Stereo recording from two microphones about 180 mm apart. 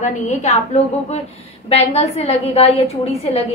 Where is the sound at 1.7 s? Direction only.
35° left (ahead or behind).